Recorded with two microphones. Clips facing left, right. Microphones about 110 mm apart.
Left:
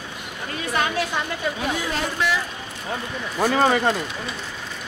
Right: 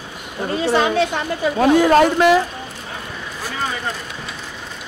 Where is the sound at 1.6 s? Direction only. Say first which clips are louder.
Right 13 dB; 45° right (ahead or behind).